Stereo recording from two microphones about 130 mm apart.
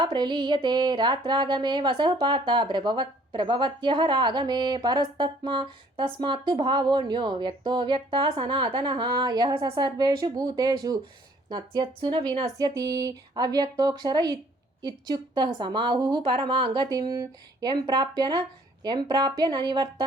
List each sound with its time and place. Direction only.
0.0 s music: 35° right (ahead or behind)
12.5 s speech: 25° right (ahead or behind)
14.8 s music: 30° right (ahead or behind)